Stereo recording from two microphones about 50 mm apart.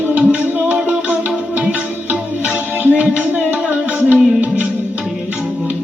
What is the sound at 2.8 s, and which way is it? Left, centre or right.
Music, right.